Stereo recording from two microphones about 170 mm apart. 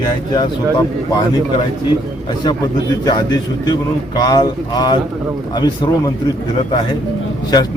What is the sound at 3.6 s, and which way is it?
Speech, 25° left (ahead or behind).